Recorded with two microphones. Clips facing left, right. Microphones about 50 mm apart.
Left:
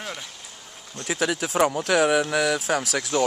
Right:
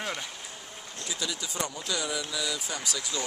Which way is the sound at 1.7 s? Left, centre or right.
Left.